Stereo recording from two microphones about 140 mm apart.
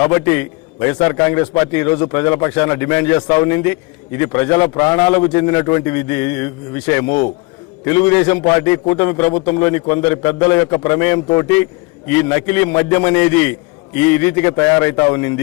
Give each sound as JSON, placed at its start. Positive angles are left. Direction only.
{"t": 0.0, "sound": "a man's voice", "side_deg": 15}